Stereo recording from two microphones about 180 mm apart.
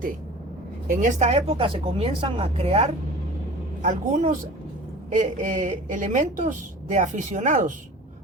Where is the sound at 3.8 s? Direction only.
45° right (ahead or behind).